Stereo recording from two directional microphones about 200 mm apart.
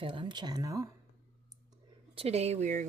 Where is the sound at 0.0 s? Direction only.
25° right (ahead or behind).